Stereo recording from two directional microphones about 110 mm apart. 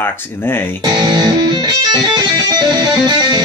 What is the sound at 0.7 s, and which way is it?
Music, 40° right (ahead or behind).